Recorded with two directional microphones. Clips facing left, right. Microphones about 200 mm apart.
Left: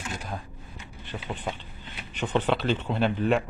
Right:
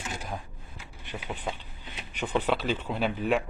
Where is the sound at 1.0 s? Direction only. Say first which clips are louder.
Left 1 dB; 10° right (ahead or behind).